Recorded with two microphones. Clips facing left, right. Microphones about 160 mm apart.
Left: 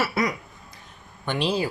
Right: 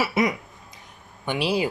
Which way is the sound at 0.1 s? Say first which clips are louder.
Right 3 dB; 25° right (ahead or behind).